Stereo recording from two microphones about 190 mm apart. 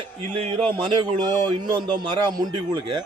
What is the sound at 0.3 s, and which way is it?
A man's voice, 30° right (ahead or behind).